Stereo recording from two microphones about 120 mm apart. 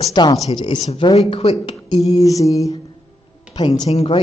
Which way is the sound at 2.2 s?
30° left (ahead or behind).